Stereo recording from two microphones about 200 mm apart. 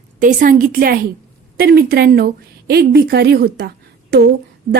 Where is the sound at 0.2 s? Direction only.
45° right (ahead or behind).